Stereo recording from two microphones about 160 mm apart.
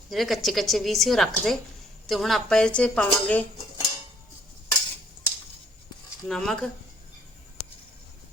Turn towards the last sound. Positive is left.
turn(degrees=5)  # may be behind; listen again after turning